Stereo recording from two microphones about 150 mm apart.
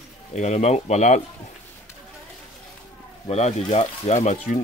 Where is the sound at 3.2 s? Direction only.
45° left (ahead or behind).